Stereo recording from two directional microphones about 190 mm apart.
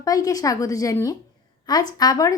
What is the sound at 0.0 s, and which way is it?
A woman's voice, 20° left (ahead or behind).